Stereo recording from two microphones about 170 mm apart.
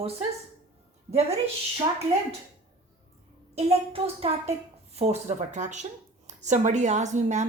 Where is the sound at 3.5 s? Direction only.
35° right (ahead or behind).